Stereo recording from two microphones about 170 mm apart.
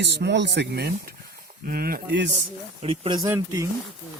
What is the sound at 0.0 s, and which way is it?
Speech, 85° right.